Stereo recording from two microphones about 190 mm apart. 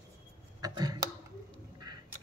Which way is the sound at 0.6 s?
20° right (ahead or behind).